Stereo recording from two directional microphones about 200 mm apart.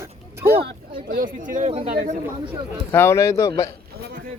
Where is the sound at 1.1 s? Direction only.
45° right (ahead or behind).